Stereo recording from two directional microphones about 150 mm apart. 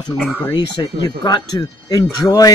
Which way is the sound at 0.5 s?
30° left (ahead or behind).